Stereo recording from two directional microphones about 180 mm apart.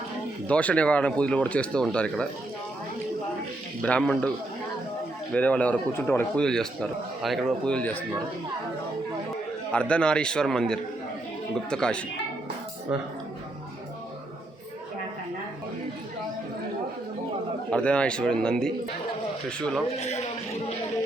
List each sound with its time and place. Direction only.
0.4 s speech: 5° left (ahead or behind)
3.8 s speech: 5° left (ahead or behind)
5.3 s speech: 10° left (ahead or behind)
9.7 s speech: 5° left (ahead or behind)
12.9 s speech: 5° right (ahead or behind)
17.7 s speech: 5° left (ahead or behind)
20.0 s a man's voice: 35° left (ahead or behind)